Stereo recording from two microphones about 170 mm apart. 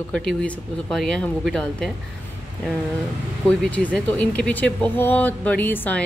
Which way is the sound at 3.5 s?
10° left (ahead or behind).